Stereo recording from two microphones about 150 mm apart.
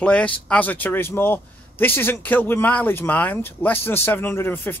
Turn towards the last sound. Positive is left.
turn(degrees=15)  # may be behind; listen again after turning